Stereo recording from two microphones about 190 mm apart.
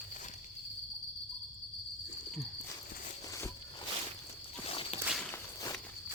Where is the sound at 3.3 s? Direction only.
15° left (ahead or behind).